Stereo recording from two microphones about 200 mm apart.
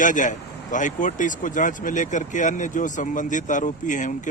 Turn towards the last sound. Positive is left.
turn(degrees=40)  # may be behind; listen again after turning